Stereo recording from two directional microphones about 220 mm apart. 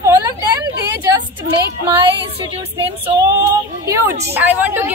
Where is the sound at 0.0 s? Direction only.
15° right (ahead or behind).